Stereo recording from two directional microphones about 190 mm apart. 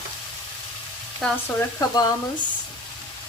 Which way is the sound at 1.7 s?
15° left (ahead or behind).